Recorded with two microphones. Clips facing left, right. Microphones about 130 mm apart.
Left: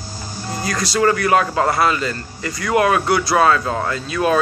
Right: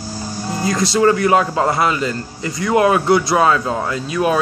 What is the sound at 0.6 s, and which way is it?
Speech, 25° right (ahead or behind).